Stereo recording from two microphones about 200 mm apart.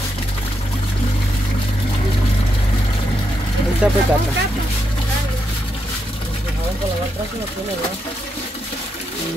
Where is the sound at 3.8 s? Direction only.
5° right (ahead or behind).